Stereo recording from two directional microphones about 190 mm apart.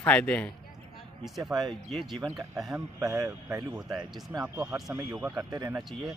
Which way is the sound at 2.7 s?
20° right (ahead or behind).